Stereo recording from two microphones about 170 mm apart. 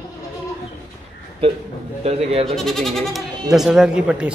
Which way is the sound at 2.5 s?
Centre (ahead or behind).